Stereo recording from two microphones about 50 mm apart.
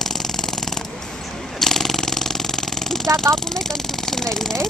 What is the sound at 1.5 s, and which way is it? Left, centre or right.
Jackhammer, centre.